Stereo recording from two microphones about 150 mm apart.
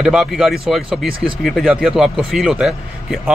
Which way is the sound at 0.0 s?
5° right (ahead or behind).